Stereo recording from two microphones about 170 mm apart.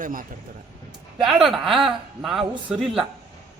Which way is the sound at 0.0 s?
55° right (ahead or behind).